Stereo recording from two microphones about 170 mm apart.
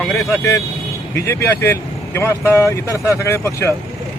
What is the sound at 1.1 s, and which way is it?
Speech, 15° left (ahead or behind).